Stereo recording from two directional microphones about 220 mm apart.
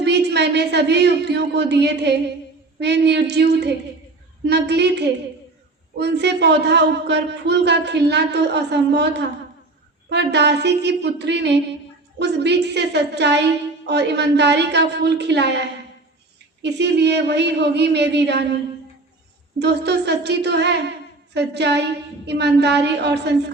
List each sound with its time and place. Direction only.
0.0 s a woman's voice: 50° right (ahead or behind)
16.6 s a woman's voice: 50° right (ahead or behind)
19.5 s a woman's voice: 50° right (ahead or behind)